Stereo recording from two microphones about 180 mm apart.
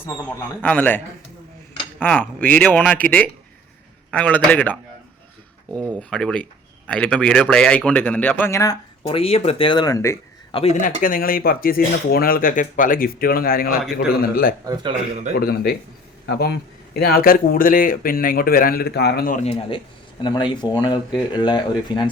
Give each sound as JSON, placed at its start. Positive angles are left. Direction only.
{"t": 0.6, "sound": "speech", "side_deg": 10}
{"t": 6.0, "sound": "speech", "side_deg": 5}
{"t": 9.0, "sound": "speech", "side_deg": 30}
{"t": 10.5, "sound": "a man's voice", "side_deg": 35}
{"t": 11.0, "sound": "a man's voice", "side_deg": 50}
{"t": 14.6, "sound": "a man's voice", "side_deg": -20}
{"t": 15.4, "sound": "a man's voice", "side_deg": 60}
{"t": 19.5, "sound": "a man's voice", "side_deg": 30}